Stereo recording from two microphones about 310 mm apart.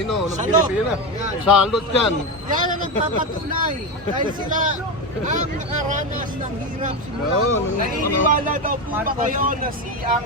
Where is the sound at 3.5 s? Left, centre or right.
Right.